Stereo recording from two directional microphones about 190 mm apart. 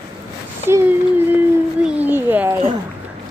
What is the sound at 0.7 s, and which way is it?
A child's voice, 10° right (ahead or behind).